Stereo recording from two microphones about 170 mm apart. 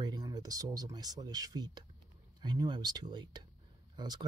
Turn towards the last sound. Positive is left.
turn(degrees=-25)  # may be behind; listen again after turning